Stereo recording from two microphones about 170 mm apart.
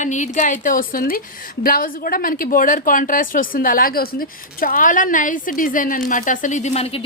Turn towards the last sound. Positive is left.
turn(degrees=35)  # may be behind; listen again after turning